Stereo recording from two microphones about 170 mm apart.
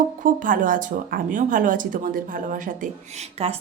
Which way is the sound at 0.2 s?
50° right (ahead or behind).